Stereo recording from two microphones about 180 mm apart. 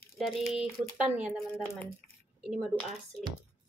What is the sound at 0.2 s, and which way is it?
Speech, centre (ahead or behind).